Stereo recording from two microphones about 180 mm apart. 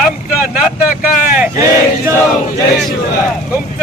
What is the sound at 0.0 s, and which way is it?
Vehicle, 5° right (ahead or behind).